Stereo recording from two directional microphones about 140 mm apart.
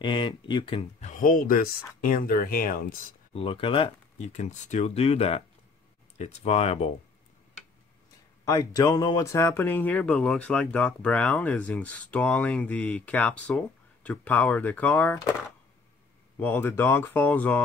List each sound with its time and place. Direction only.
0.0 s speech: 35° left (ahead or behind)
1.0 s speech: 75° left (ahead or behind); by 3.2 s 90° left
3.3 s speech: 40° left (ahead or behind)
4.3 s speech: 55° left (ahead or behind)
8.5 s speech: 25° left (ahead or behind)
16.3 s speech: 15° left (ahead or behind)